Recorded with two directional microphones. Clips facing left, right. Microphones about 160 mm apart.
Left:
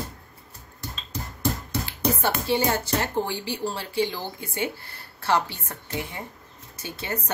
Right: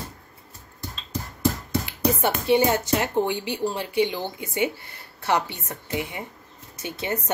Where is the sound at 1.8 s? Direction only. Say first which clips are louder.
Right 2 dB; 20° right (ahead or behind).